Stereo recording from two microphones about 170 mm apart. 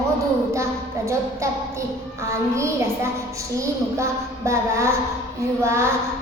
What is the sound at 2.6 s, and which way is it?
Child singing, 15° right (ahead or behind).